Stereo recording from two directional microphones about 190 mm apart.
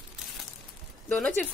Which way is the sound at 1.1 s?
5° left (ahead or behind).